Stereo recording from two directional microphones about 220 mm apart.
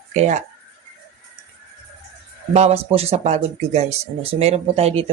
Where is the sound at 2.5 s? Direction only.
30° right (ahead or behind).